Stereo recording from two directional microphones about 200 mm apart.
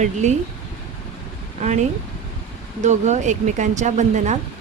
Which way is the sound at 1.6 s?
35° right (ahead or behind).